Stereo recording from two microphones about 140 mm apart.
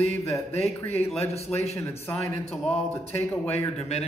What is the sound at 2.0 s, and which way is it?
Speech, 15° left (ahead or behind).